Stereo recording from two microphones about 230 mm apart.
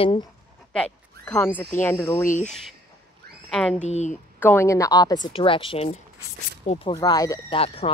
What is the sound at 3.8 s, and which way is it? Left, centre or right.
Speech, left.